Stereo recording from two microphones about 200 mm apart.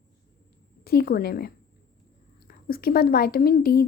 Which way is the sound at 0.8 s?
50° left (ahead or behind).